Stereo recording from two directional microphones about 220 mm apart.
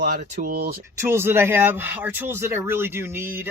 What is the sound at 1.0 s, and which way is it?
Speech, 10° right (ahead or behind).